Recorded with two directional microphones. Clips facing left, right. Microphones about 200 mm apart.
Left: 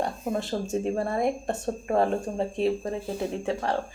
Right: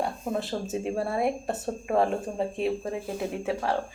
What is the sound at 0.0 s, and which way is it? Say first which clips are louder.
Speech: left 1 dB; centre (ahead or behind).